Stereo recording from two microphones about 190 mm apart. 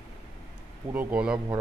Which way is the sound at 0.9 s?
10° right (ahead or behind).